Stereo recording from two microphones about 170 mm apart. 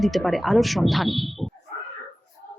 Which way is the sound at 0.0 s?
Centre (ahead or behind).